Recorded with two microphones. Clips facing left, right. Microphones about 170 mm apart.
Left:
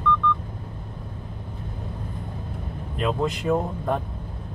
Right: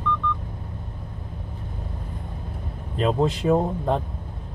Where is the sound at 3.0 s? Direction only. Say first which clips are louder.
Right 3 dB; 30° right (ahead or behind).